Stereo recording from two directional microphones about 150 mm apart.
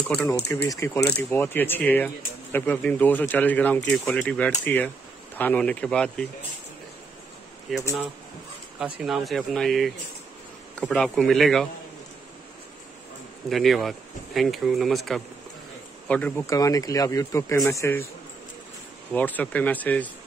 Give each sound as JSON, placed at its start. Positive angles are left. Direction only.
{"t": 0.3, "sound": "speech", "side_deg": 20}
{"t": 7.7, "sound": "speech", "side_deg": 0}
{"t": 9.0, "sound": "speech", "side_deg": 0}
{"t": 13.5, "sound": "speech", "side_deg": 0}
{"t": 16.4, "sound": "speech", "side_deg": 20}
{"t": 19.1, "sound": "speech", "side_deg": 10}